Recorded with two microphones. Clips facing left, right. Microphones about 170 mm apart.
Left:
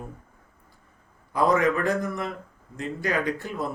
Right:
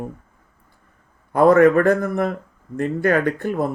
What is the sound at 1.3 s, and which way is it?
Speech, 55° right (ahead or behind).